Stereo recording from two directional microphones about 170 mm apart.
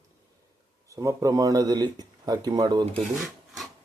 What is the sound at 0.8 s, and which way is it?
Speech, 20° right (ahead or behind).